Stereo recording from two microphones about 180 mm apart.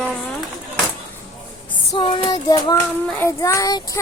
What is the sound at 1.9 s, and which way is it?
Child singing, 25° left (ahead or behind).